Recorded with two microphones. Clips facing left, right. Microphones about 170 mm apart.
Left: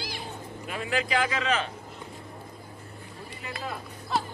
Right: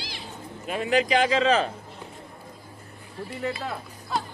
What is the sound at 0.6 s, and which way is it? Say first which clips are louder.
A man's voice: right 7 dB; 20° right (ahead or behind).